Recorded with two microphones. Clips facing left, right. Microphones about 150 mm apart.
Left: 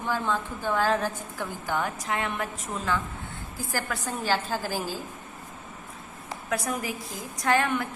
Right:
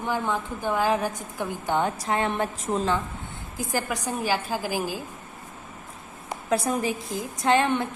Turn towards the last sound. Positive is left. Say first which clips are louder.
# right 3 dB
turn(degrees=-25)  # may be behind; listen again after turning